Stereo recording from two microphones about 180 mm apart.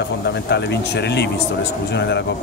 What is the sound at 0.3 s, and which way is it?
Speech, 70° left (ahead or behind).